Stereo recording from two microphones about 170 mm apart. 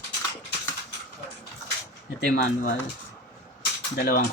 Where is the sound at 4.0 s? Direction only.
60° left (ahead or behind).